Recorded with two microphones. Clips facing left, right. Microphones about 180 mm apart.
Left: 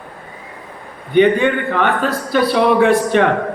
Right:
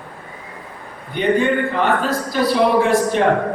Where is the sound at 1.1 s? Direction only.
65° left (ahead or behind).